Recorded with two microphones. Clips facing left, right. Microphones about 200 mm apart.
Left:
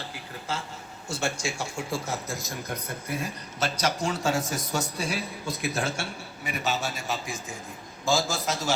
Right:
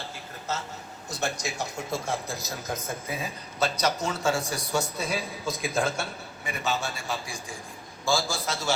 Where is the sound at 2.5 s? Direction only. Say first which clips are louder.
Right 1 dB; 90° right.